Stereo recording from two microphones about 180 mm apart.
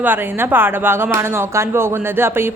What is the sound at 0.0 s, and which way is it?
Speech, 10° right (ahead or behind).